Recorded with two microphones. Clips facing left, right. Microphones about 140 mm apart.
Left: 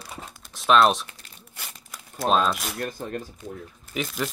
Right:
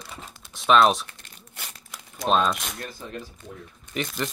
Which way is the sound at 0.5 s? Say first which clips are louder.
Even; centre (ahead or behind).